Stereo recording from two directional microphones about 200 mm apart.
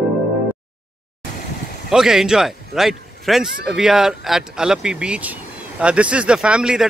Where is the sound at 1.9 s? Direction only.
Centre (ahead or behind).